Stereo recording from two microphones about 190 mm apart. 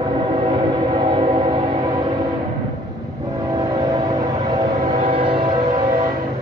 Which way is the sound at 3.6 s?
20° right (ahead or behind).